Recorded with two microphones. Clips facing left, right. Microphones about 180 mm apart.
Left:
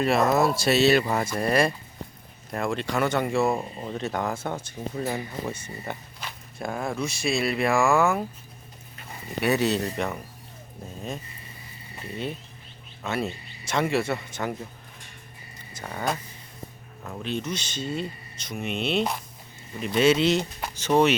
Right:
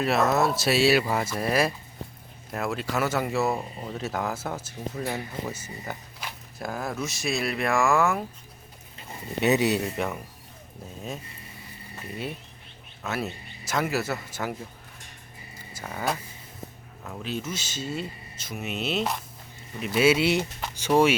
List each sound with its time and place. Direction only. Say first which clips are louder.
0.0 s speech: left 2 dB; centre (ahead or behind)
9.4 s speech: right 1 dB; 20° right (ahead or behind)
9.8 s speech: left 1 dB; 5° right (ahead or behind)
13.0 s speech: left 2 dB; centre (ahead or behind)
15.7 s speech: left 1 dB; 5° right (ahead or behind)